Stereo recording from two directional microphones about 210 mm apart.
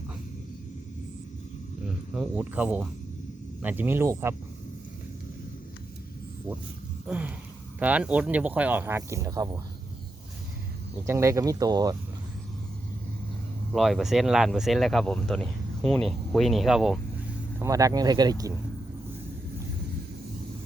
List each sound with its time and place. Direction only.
2.1 s speech: 5° right (ahead or behind)
7.1 s speech: 5° right (ahead or behind)
11.0 s speech: 15° right (ahead or behind)
13.7 s speech: centre (ahead or behind)
17.6 s speech: 15° right (ahead or behind)